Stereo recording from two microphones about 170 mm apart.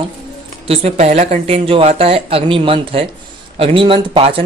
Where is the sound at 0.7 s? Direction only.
40° right (ahead or behind).